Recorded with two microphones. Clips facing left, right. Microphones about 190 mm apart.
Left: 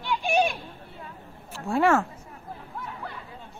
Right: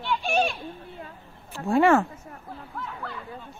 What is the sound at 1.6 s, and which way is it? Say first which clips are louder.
Speech: right 3 dB; centre (ahead or behind).